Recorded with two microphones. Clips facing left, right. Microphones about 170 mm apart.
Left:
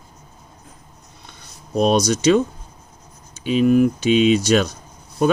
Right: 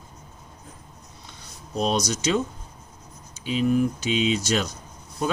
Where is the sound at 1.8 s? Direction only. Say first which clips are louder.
Left 8 dB; 65° left (ahead or behind).